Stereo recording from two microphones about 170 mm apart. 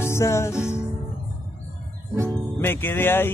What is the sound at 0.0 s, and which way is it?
Music, 15° left (ahead or behind).